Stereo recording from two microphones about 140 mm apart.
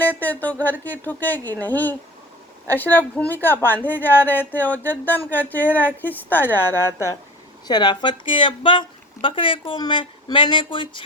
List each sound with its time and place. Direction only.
0.0 s a woman's voice: 10° left (ahead or behind)
7.7 s speech: 30° left (ahead or behind)